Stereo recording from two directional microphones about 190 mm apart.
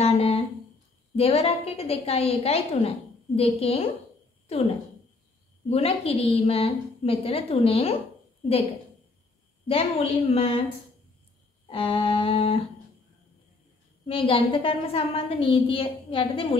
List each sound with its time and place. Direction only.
0.0 s a sound: 35° left (ahead or behind)
1.1 s a woman's voice: 30° left (ahead or behind)
5.7 s a woman's voice: 35° left (ahead or behind)
9.7 s a woman's voice: 30° left (ahead or behind)
11.6 s a woman's voice: 30° left (ahead or behind)
14.0 s a woman's voice: 25° left (ahead or behind)